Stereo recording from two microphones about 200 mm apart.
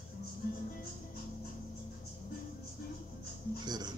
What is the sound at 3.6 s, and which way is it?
Music, 20° right (ahead or behind).